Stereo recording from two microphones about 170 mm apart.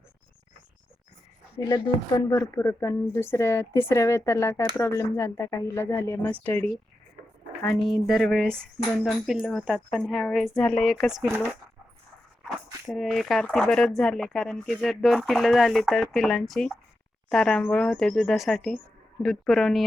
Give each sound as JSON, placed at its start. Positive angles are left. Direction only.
{"t": 1.6, "sound": "speech", "side_deg": 25}
{"t": 7.8, "sound": "speech", "side_deg": 0}
{"t": 12.9, "sound": "speech", "side_deg": 0}